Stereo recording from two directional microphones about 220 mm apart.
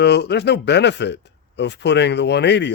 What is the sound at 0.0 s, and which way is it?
Speech, 50° left (ahead or behind).